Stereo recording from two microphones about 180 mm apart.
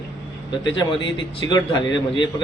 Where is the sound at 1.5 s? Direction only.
25° left (ahead or behind).